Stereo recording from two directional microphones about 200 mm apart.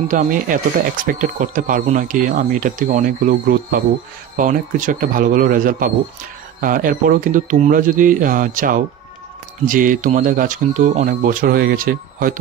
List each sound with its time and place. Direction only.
0.1 s a man's voice: 40° right (ahead or behind)